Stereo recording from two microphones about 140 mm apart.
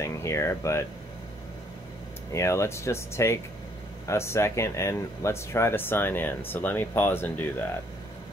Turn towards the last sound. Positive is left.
turn(degrees=15)  # may be behind; listen again after turning